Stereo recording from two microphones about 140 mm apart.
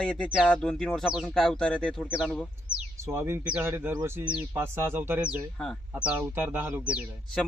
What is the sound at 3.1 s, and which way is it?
Speech, 20° right (ahead or behind).